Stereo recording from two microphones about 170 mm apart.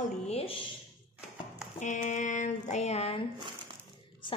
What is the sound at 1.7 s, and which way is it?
A woman's voice, 45° left (ahead or behind).